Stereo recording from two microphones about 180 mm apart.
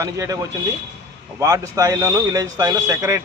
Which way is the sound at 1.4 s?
15° right (ahead or behind).